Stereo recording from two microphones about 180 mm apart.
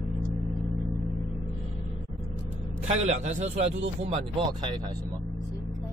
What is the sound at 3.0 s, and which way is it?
Speech, 40° right (ahead or behind).